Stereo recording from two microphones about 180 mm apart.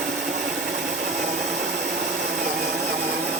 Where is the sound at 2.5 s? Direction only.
65° right (ahead or behind).